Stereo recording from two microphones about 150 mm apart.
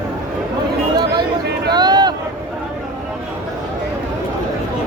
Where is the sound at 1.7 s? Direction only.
30° right (ahead or behind).